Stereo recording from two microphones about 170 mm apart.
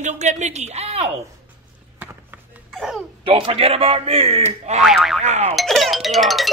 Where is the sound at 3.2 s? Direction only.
30° right (ahead or behind).